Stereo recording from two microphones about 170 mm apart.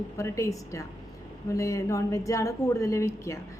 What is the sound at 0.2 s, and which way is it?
A woman's voice, 20° left (ahead or behind).